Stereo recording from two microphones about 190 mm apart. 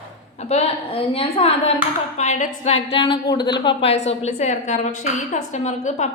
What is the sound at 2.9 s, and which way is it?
A woman's voice, 25° left (ahead or behind).